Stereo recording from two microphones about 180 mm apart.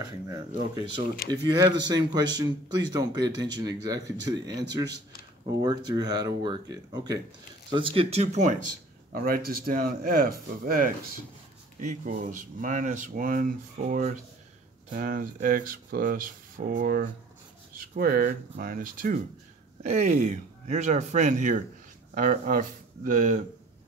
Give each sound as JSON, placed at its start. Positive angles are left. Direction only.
{"t": 1.3, "sound": "speech", "side_deg": -25}
{"t": 9.1, "sound": "speech", "side_deg": -55}